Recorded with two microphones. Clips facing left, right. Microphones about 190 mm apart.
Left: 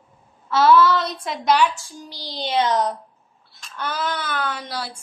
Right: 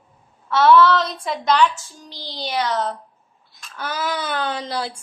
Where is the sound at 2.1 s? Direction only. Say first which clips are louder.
Left 3 dB; 20° left (ahead or behind).